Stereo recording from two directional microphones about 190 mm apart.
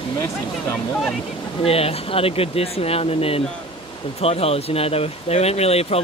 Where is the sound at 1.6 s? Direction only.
30° left (ahead or behind).